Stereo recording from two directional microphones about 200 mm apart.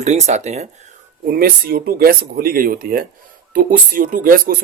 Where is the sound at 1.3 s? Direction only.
50° right (ahead or behind).